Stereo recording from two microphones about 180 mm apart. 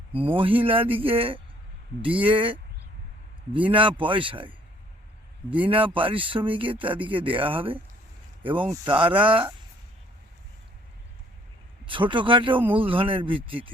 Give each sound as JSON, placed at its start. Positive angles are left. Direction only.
{"t": 0.1, "sound": "speech", "side_deg": -30}
{"t": 5.6, "sound": "speech", "side_deg": -30}
{"t": 11.9, "sound": "speech", "side_deg": -25}